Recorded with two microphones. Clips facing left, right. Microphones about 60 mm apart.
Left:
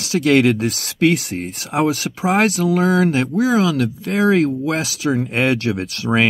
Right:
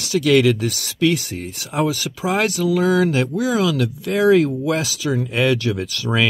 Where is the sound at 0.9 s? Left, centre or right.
Left.